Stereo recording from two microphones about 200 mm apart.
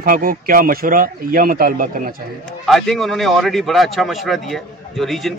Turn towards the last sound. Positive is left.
turn(degrees=0)  # may be behind; listen again after turning